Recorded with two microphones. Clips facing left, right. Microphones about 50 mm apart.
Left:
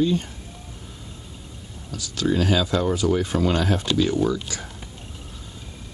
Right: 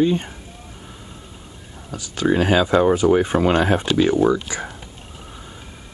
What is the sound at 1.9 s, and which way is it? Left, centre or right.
Speech, right.